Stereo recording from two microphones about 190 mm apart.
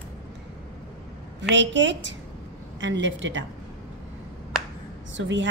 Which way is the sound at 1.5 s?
70° right (ahead or behind).